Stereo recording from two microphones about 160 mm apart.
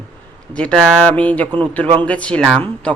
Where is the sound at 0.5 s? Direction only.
5° left (ahead or behind).